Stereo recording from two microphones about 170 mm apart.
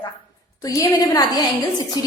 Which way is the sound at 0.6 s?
20° left (ahead or behind).